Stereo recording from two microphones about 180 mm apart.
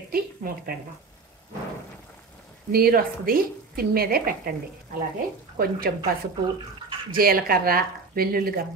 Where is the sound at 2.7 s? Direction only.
55° right (ahead or behind).